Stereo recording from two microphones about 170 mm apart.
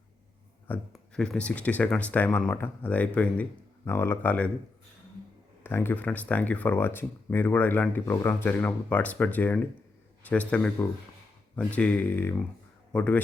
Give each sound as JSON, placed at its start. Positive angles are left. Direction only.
{"t": 0.7, "sound": "speech", "side_deg": 5}
{"t": 5.6, "sound": "speech", "side_deg": 15}